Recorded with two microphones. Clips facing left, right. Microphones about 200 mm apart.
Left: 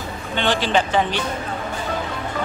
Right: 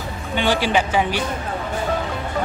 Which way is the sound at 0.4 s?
10° right (ahead or behind).